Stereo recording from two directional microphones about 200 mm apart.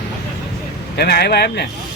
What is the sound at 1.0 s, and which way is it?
Speech, 55° left (ahead or behind).